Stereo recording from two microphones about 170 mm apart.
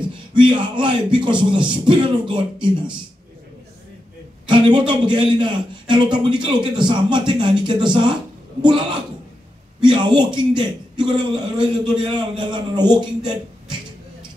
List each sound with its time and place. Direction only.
0.3 s a man's voice: 30° right (ahead or behind)
4.5 s a man's voice: 30° right (ahead or behind)
9.8 s a man's voice: 25° right (ahead or behind)